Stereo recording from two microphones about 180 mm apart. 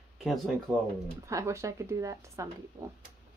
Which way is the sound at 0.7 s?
10° right (ahead or behind).